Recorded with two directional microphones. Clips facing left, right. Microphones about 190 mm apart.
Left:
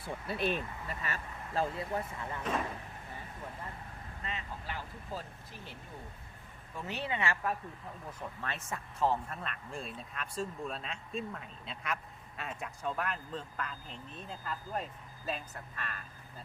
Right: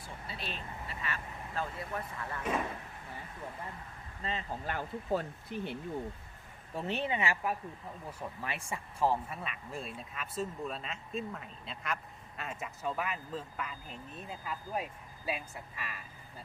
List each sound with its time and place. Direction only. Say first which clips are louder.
0.0 s vehicle: left 9 dB; 60° left (ahead or behind); by 1.6 s 40° left (ahead or behind)
1.9 s speech: left 2 dB; 20° left (ahead or behind)
2.4 s speech: right 1 dB; 5° right (ahead or behind)
4.2 s speech: right 4 dB; 30° right (ahead or behind)
4.6 s speech: right 6 dB; 50° right (ahead or behind)
6.7 s a woman's voice: right 3 dB; 25° right (ahead or behind); by 16.0 s 5° right (ahead or behind)